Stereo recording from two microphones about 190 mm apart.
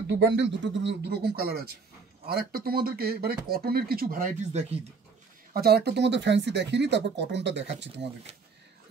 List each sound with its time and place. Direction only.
0.0 s speech: 70° right (ahead or behind); by 4.7 s 35° right (ahead or behind)
5.5 s speech: 55° right (ahead or behind)